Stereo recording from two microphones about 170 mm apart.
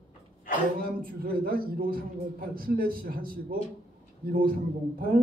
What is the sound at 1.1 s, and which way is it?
A man's voice, 60° right (ahead or behind).